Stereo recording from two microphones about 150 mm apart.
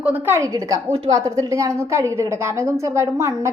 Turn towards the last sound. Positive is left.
turn(degrees=-20)  # may be behind; listen again after turning